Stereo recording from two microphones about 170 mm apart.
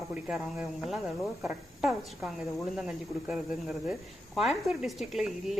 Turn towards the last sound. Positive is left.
turn(degrees=0)  # may be behind; listen again after turning